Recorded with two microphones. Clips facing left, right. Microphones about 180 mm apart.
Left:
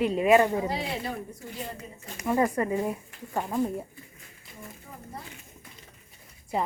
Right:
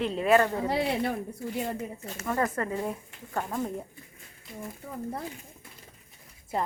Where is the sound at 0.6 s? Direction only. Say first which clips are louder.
Right 4 dB; 65° right (ahead or behind).